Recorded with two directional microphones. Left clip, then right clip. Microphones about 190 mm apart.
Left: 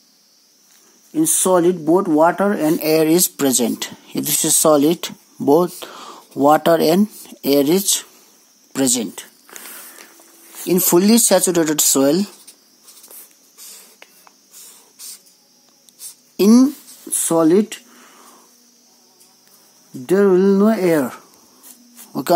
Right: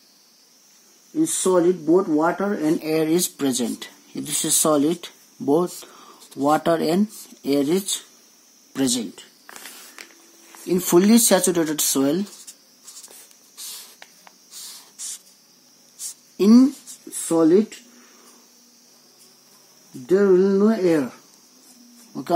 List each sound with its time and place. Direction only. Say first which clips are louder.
1.1 s speech: left 4 dB; 55° left (ahead or behind); by 9.0 s 30° left (ahead or behind)
10.6 s speech: left 3 dB; 40° left (ahead or behind)
16.3 s a sound: left 3 dB; 35° left (ahead or behind)
17.3 s speech: left 3 dB; 55° left (ahead or behind)
20.1 s speech: left 3 dB; 50° left (ahead or behind)